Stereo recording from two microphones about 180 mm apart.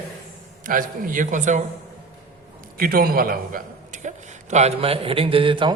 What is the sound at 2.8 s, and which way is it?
A man's voice, 55° right (ahead or behind).